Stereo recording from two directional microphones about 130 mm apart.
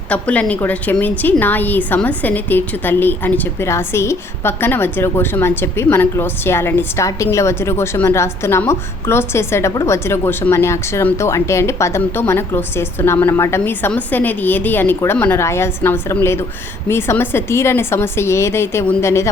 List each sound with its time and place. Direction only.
0.1 s a woman's voice: 10° left (ahead or behind)